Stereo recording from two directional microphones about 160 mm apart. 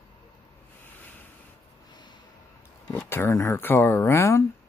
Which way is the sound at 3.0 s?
15° left (ahead or behind).